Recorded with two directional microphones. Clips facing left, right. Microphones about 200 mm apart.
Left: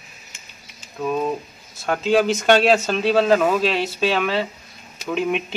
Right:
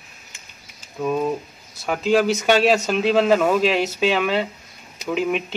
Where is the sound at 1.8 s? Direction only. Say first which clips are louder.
Even; 5° right (ahead or behind).